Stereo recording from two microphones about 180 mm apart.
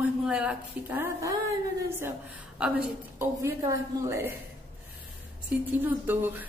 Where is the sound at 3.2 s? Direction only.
15° right (ahead or behind).